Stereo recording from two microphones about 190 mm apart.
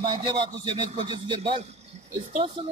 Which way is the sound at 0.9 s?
25° right (ahead or behind).